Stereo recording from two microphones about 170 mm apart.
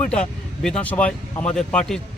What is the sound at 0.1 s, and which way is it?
Speech, 5° left (ahead or behind).